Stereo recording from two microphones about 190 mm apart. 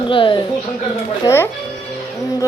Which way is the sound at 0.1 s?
25° left (ahead or behind).